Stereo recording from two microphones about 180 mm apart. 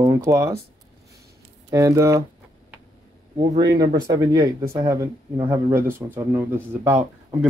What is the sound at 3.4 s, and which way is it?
Speech, 20° right (ahead or behind).